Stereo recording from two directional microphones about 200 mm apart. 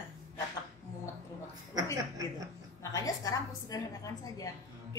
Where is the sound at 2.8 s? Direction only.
15° left (ahead or behind).